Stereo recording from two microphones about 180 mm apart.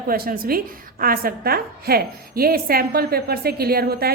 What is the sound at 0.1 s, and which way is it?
A woman's voice, 55° right (ahead or behind).